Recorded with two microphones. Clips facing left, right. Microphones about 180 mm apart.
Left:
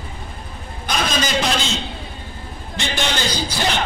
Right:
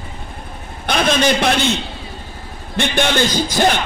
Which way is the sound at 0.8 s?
60° right (ahead or behind).